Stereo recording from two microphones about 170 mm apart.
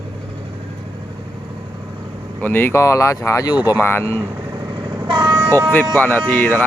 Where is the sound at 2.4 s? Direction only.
10° left (ahead or behind).